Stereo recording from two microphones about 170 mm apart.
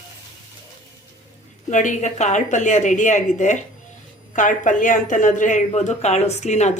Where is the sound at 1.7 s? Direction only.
45° left (ahead or behind).